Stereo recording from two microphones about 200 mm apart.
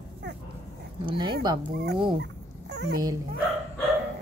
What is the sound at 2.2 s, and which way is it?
Dog, 60° right (ahead or behind).